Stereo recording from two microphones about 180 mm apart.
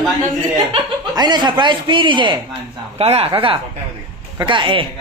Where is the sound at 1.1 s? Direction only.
25° right (ahead or behind).